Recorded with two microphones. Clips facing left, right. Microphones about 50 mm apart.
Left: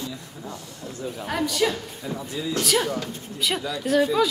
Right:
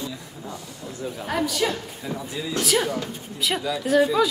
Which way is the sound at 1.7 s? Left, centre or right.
Centre.